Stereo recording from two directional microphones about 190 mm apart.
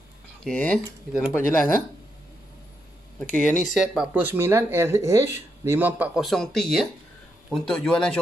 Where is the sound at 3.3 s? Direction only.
40° left (ahead or behind).